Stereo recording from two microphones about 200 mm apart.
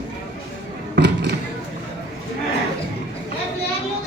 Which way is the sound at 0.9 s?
60° right (ahead or behind).